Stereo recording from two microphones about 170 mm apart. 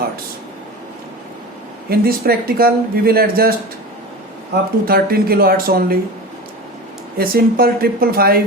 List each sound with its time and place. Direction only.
1.9 s speech: 65° right (ahead or behind)
4.9 s speech: 65° right (ahead or behind)
7.2 s speech: 60° right (ahead or behind)